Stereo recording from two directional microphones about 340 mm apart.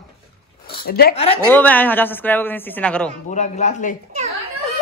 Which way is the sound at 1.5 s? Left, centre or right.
Centre.